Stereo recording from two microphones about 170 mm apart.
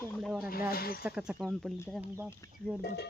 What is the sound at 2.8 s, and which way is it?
Speech, 70° left (ahead or behind).